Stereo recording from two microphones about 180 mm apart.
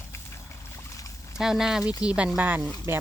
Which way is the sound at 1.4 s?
Centre (ahead or behind).